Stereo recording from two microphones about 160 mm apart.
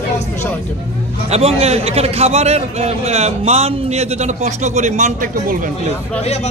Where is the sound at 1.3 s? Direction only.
40° right (ahead or behind).